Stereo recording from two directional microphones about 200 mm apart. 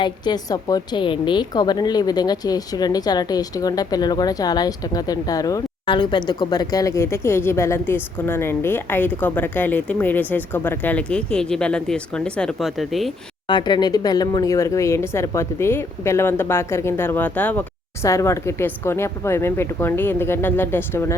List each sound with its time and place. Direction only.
0.0 s a woman's voice: 20° left (ahead or behind); by 13.1 s centre (ahead or behind)
13.5 s a woman's voice: 20° left (ahead or behind)